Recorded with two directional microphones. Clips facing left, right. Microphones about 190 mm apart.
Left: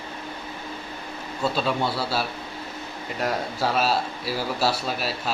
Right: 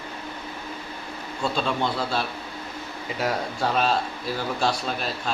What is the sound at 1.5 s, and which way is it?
A man's voice, 5° left (ahead or behind).